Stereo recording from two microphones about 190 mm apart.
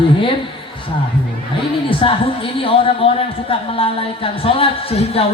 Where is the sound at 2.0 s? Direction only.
30° left (ahead or behind).